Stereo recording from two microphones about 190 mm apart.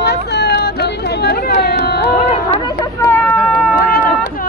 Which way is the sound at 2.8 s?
15° left (ahead or behind).